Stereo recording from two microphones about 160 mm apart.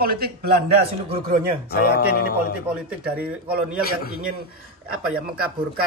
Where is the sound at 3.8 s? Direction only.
75° left (ahead or behind).